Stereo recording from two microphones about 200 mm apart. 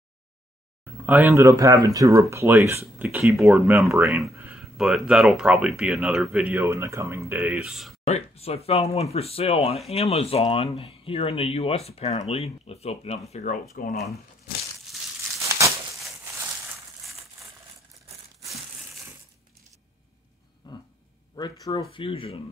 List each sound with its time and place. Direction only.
1.0 s speech: 10° right (ahead or behind)
6.5 s speech: 15° right (ahead or behind)
7.4 s speech: centre (ahead or behind)
8.0 s speech: 30° left (ahead or behind)
13.3 s speech: 40° left (ahead or behind)
13.9 s speech: centre (ahead or behind)
15.4 s crumpling: 15° right (ahead or behind)
20.6 s a sound: 20° left (ahead or behind)
21.4 s speech: 20° left (ahead or behind)